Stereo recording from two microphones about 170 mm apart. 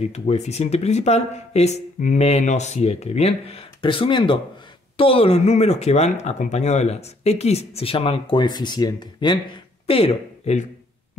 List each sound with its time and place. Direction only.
0.0 s speech: 40° left (ahead or behind)